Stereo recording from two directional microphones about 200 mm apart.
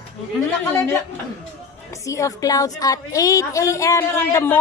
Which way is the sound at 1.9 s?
15° left (ahead or behind).